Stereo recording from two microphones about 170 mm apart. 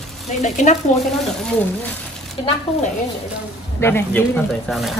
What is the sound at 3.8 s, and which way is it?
Speech, 10° left (ahead or behind).